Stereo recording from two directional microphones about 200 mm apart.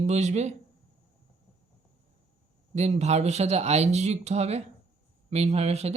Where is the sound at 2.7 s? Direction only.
35° right (ahead or behind).